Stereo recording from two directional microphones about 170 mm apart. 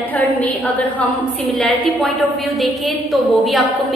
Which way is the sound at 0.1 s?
10° left (ahead or behind).